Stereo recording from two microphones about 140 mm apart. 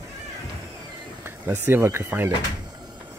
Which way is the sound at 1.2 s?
15° right (ahead or behind).